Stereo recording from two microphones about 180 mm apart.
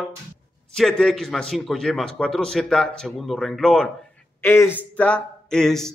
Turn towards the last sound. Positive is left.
turn(degrees=5)  # may be behind; listen again after turning